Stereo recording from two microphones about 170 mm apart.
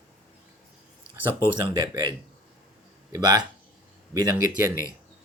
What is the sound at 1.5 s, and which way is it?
Speech, 25° right (ahead or behind).